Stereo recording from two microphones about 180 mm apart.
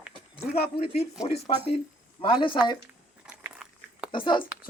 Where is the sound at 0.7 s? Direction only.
65° left (ahead or behind).